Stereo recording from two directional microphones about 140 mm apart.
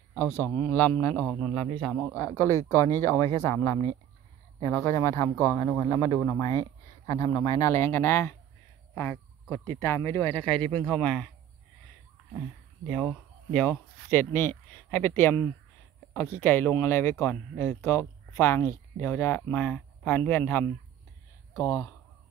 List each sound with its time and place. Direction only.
0.1 s speech: 15° left (ahead or behind)
2.1 s speech: 20° left (ahead or behind)
9.5 s speech: 15° left (ahead or behind)
12.9 s speech: 10° left (ahead or behind)
21.5 s speech: 25° left (ahead or behind)